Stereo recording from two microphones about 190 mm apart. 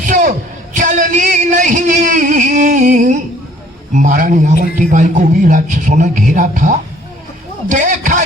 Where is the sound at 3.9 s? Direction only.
40° right (ahead or behind).